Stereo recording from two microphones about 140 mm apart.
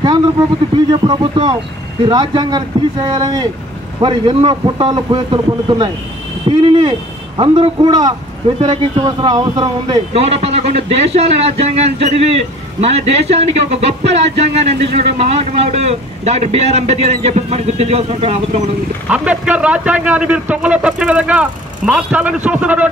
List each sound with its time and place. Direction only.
0.7 s a man's voice: 35° right (ahead or behind)
9.0 s a man's voice: 30° right (ahead or behind)
10.1 s a man's voice: 50° right (ahead or behind)
19.0 s a man's voice: 10° right (ahead or behind)